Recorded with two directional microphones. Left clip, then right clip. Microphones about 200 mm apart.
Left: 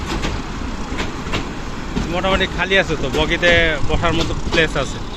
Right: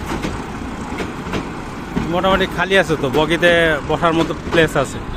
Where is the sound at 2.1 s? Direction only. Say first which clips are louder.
Right 2 dB; 25° right (ahead or behind).